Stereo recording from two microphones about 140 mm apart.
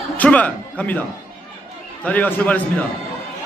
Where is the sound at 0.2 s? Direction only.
10° left (ahead or behind).